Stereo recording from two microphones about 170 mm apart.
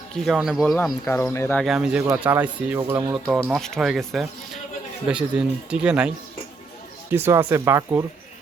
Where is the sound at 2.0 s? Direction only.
15° right (ahead or behind).